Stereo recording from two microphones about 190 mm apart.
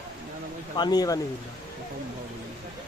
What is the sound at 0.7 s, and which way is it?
Speech, 20° left (ahead or behind).